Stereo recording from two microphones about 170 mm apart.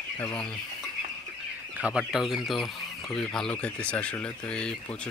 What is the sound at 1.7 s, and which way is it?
Speech, 5° right (ahead or behind).